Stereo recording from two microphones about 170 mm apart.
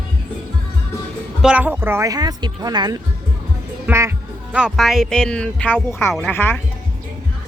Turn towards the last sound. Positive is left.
turn(degrees=10)  # may be behind; listen again after turning